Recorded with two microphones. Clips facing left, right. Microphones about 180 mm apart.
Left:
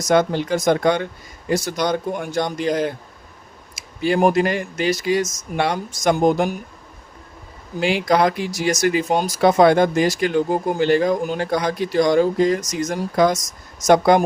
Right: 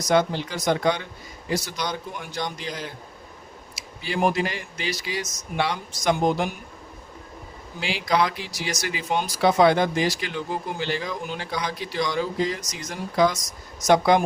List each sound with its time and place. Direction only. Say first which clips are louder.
0.0 s speech: left 4 dB; 50° left (ahead or behind)
7.8 s speech: left 6 dB; 50° left (ahead or behind)